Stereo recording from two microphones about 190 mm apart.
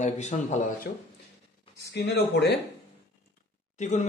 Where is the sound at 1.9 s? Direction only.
65° left (ahead or behind).